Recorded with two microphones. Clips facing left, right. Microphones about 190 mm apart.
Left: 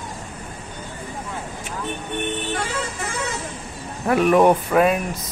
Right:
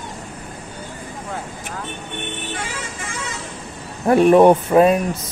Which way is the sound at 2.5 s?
65° left (ahead or behind).